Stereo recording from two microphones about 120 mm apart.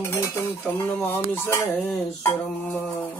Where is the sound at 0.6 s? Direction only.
15° left (ahead or behind).